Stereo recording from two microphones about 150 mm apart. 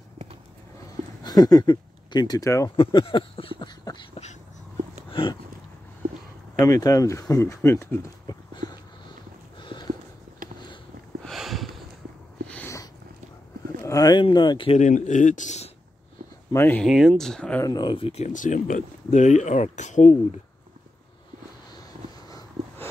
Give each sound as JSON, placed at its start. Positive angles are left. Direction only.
{"t": 1.2, "sound": "speech", "side_deg": 25}
{"t": 2.7, "sound": "speech", "side_deg": 35}
{"t": 5.1, "sound": "a sound", "side_deg": 35}
{"t": 6.6, "sound": "speech", "side_deg": 25}
{"t": 8.3, "sound": "dog", "side_deg": 25}
{"t": 9.6, "sound": "clip-clop", "side_deg": 30}
{"t": 10.4, "sound": "a sound", "side_deg": -65}
{"t": 11.2, "sound": "a sound", "side_deg": 0}
{"t": 13.8, "sound": "speech", "side_deg": 25}
{"t": 14.8, "sound": "speech", "side_deg": 55}
{"t": 16.5, "sound": "speech", "side_deg": 15}
{"t": 16.8, "sound": "speech", "side_deg": 0}
{"t": 17.6, "sound": "speech", "side_deg": 25}